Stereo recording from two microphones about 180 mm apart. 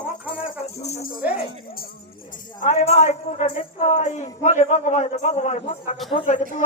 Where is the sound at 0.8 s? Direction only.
40° left (ahead or behind).